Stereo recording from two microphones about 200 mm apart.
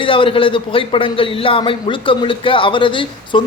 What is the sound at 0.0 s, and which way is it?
A man's voice, 25° left (ahead or behind).